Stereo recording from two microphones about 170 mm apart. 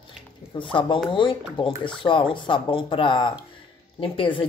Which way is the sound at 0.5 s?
30° left (ahead or behind).